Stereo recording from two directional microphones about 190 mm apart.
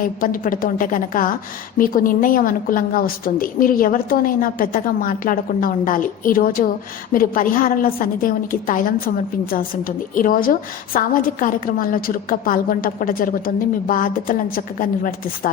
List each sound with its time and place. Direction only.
0.2 s a woman's voice: 45° left (ahead or behind)